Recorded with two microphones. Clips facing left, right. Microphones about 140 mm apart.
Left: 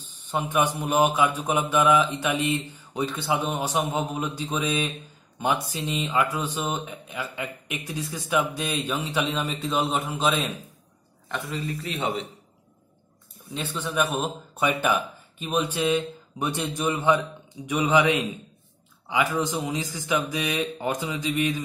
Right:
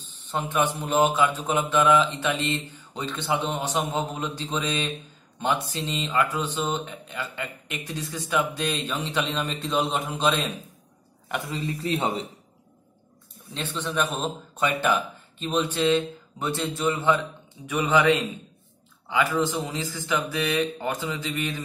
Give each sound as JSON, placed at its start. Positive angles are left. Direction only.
{"t": 0.3, "sound": "speech", "side_deg": 10}
{"t": 11.2, "sound": "a man's voice", "side_deg": -20}
{"t": 13.5, "sound": "speech", "side_deg": 10}